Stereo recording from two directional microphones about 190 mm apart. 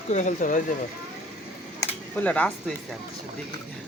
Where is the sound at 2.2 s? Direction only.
5° left (ahead or behind).